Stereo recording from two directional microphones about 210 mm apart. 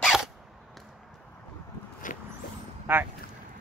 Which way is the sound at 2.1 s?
40° left (ahead or behind).